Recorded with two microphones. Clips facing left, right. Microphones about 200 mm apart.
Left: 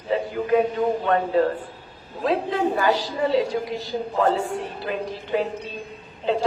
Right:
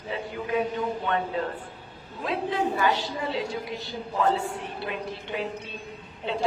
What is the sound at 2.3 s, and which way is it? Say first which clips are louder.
A woman's voice: left 4 dB; 40° left (ahead or behind).